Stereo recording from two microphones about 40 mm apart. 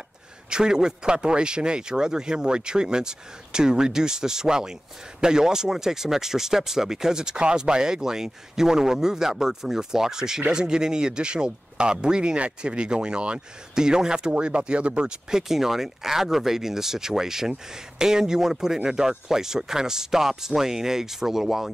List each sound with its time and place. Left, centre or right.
0.5 s speech: centre
15.4 s speech: centre